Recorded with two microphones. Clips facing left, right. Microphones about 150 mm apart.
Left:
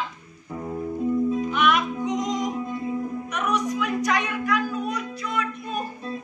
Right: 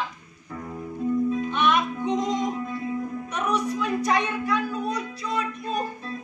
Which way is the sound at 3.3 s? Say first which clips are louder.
Even; 30° right (ahead or behind).